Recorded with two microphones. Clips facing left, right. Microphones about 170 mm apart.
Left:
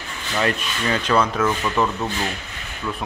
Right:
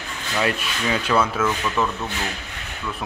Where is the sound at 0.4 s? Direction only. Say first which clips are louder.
Left 1 dB; 5° right (ahead or behind).